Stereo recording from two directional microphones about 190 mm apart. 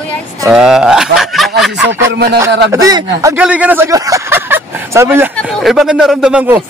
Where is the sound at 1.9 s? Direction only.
60° right (ahead or behind).